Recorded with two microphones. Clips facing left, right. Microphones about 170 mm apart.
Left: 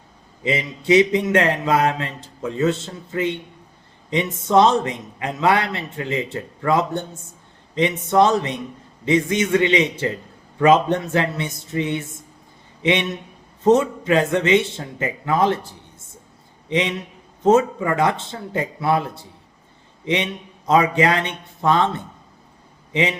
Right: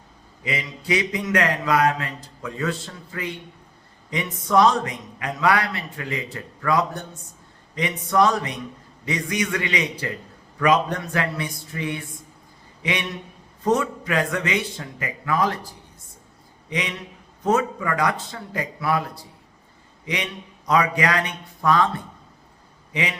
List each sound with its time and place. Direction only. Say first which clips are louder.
0.4 s a man's voice: left 7 dB; 25° left (ahead or behind)